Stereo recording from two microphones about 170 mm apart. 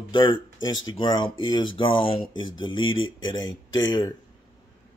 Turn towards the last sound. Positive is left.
turn(degrees=25)  # may be behind; listen again after turning